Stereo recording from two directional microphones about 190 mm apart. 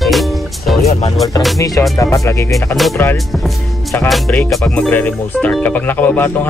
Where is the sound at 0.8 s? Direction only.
35° left (ahead or behind).